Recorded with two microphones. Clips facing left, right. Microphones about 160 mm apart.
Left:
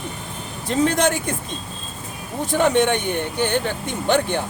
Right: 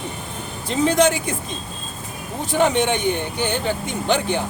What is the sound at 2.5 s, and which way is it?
Speech, 55° left (ahead or behind).